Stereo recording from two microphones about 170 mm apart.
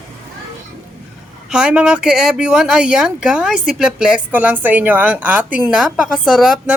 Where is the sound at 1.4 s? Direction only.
5° right (ahead or behind).